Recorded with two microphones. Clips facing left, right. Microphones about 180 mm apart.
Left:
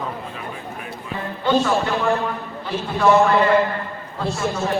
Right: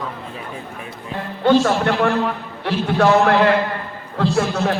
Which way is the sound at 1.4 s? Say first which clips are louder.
Right 4 dB; 80° right.